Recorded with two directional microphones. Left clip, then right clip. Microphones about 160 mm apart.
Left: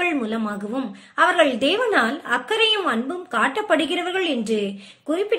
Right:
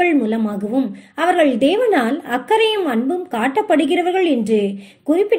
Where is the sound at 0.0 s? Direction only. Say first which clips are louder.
Right 6 dB; 15° right (ahead or behind).